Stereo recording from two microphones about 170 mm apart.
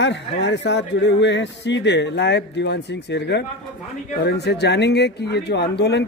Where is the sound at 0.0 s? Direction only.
90° left.